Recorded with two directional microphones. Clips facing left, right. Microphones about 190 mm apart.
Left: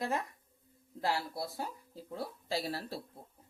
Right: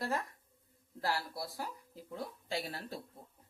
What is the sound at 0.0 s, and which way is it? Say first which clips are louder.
Speech: left 2 dB; 20° left (ahead or behind).